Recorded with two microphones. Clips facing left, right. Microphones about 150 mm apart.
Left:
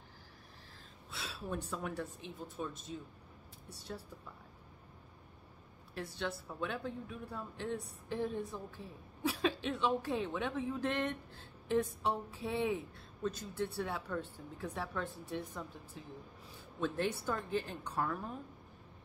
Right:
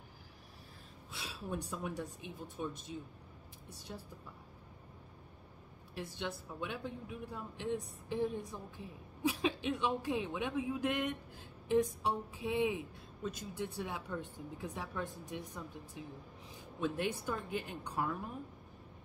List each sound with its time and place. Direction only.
1.2 s speech: 15° right (ahead or behind)
3.6 s a woman's voice: 15° right (ahead or behind)
5.9 s speech: 15° right (ahead or behind)